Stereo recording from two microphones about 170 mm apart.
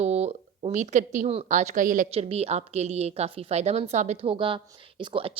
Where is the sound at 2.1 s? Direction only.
35° right (ahead or behind).